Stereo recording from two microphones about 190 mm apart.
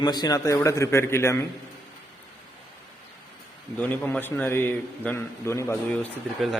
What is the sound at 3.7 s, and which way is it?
A man's voice, 10° left (ahead or behind).